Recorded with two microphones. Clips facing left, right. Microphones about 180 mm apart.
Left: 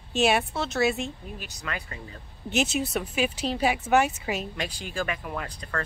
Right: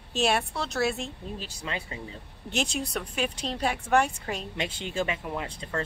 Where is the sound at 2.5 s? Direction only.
5° left (ahead or behind).